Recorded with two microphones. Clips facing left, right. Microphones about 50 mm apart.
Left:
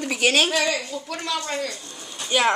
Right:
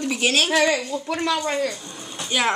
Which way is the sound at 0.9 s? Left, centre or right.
Right.